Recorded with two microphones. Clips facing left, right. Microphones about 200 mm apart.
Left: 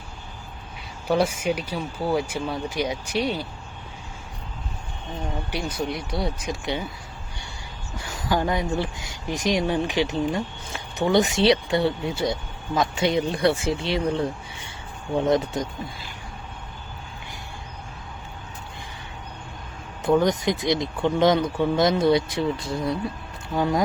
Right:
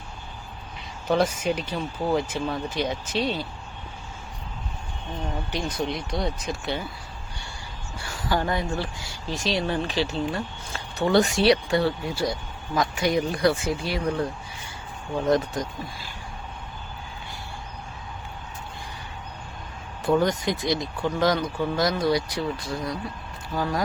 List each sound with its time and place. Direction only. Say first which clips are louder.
1.0 s speech: left 1 dB; 10° left (ahead or behind)
5.5 s speech: even; 10° left (ahead or behind)
7.9 s speech: left 2 dB; 20° left (ahead or behind)
15.5 s speech: left 2 dB; 20° left (ahead or behind)
20.2 s speech: left 2 dB; 20° left (ahead or behind)